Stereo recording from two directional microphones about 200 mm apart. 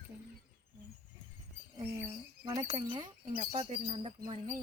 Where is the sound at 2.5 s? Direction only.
20° right (ahead or behind).